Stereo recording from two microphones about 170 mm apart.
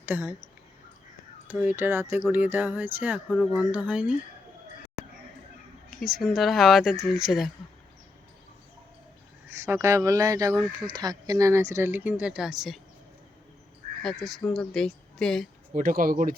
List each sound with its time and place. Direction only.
0.0 s speech: 10° right (ahead or behind)
1.5 s speech: 10° right (ahead or behind)
3.2 s speech: centre (ahead or behind)
6.0 s speech: centre (ahead or behind)
9.5 s speech: 15° right (ahead or behind)
14.0 s speech: centre (ahead or behind)
15.7 s speech: 55° right (ahead or behind)